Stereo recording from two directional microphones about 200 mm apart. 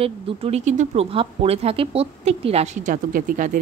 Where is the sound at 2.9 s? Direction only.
45° right (ahead or behind).